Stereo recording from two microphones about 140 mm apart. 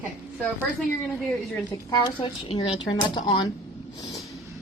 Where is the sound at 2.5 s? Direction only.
45° left (ahead or behind).